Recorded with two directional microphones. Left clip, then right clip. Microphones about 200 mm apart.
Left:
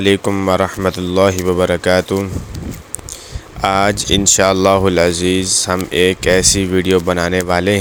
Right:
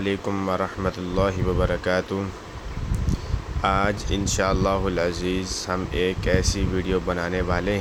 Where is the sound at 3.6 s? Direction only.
45° left (ahead or behind).